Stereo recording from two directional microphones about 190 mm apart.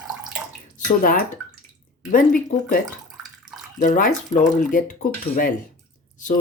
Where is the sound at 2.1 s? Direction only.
45° left (ahead or behind).